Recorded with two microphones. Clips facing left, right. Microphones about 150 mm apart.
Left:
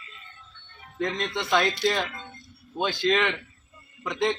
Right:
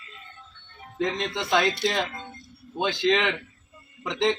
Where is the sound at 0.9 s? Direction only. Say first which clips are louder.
Right 1 dB; 20° right (ahead or behind).